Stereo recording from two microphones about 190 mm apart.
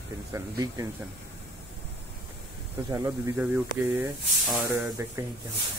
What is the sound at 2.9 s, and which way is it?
Speech, 15° right (ahead or behind).